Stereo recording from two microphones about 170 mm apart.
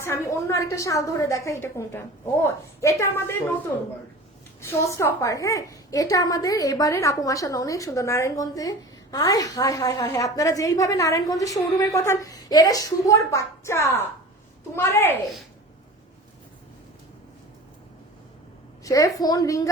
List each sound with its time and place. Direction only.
0.0 s a woman's voice: 15° left (ahead or behind)
18.9 s a woman's voice: 20° left (ahead or behind)